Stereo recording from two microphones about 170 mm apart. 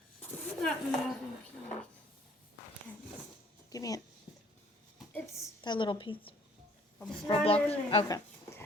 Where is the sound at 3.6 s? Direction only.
20° left (ahead or behind).